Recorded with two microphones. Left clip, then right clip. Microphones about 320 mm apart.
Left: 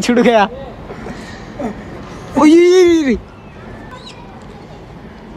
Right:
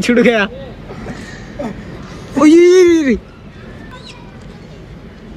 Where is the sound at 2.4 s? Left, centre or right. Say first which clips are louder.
Right 1 dB; centre.